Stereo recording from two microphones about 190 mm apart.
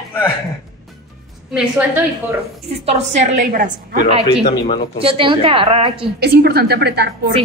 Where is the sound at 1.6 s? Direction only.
10° right (ahead or behind).